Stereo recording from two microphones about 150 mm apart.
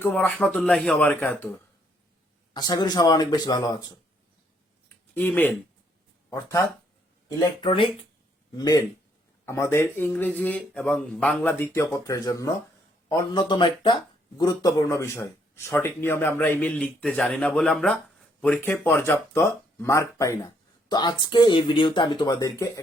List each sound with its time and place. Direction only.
0.0 s speech: 10° left (ahead or behind)
2.5 s speech: 30° left (ahead or behind)
5.1 s speech: 10° left (ahead or behind)
7.3 s speech: 25° left (ahead or behind)